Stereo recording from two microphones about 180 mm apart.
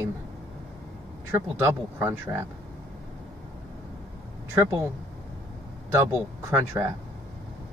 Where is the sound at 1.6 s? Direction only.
10° right (ahead or behind).